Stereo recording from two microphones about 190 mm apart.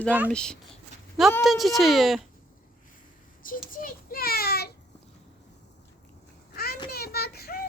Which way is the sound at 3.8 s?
55° left (ahead or behind).